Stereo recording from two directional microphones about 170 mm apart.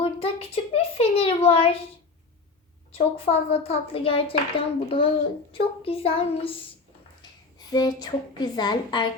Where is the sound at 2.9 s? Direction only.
35° left (ahead or behind).